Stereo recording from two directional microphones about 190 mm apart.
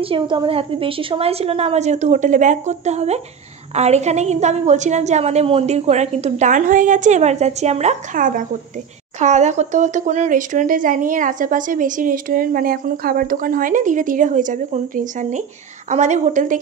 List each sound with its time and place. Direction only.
0.0 s a woman's voice: 25° right (ahead or behind)